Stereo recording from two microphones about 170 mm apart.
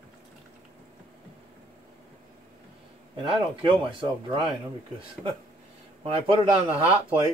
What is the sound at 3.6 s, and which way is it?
Speech, 30° right (ahead or behind).